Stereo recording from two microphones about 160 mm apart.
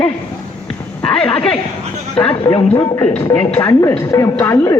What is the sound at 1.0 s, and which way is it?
Speech, 5° left (ahead or behind).